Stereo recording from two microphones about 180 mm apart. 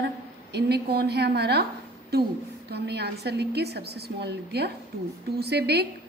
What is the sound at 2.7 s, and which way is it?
A woman's voice, 65° right (ahead or behind).